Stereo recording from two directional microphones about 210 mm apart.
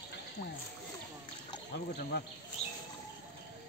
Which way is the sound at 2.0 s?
45° left (ahead or behind).